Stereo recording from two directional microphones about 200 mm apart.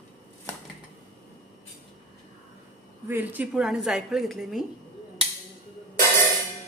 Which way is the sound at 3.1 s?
10° right (ahead or behind).